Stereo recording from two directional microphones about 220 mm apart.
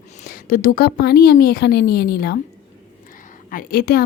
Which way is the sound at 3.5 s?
40° left (ahead or behind).